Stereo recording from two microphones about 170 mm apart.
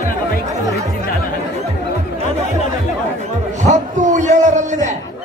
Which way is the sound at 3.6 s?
45° right (ahead or behind).